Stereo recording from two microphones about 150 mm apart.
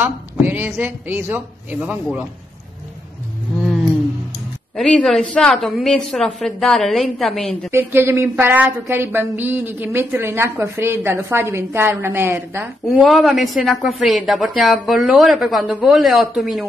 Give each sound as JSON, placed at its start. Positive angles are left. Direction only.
{"t": 0.0, "sound": "a woman's voice", "side_deg": -10}
{"t": 3.6, "sound": "a sound", "side_deg": 0}
{"t": 4.7, "sound": "a woman's voice", "side_deg": 5}
{"t": 7.7, "sound": "a woman's voice", "side_deg": -15}
{"t": 13.0, "sound": "a woman's voice", "side_deg": 0}